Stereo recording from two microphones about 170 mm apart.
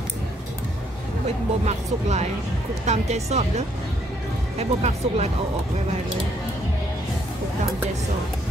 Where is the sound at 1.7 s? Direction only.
40° right (ahead or behind).